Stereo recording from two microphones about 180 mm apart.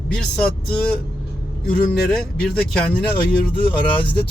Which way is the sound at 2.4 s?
5° left (ahead or behind).